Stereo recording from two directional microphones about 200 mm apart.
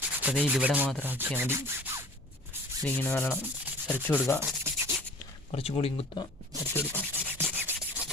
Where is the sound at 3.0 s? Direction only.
5° left (ahead or behind).